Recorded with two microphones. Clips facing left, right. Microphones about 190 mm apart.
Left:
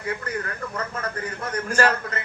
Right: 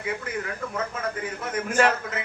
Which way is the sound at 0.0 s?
5° right (ahead or behind).